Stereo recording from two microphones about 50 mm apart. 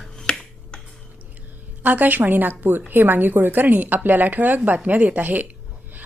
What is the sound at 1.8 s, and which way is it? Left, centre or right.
Speech, right.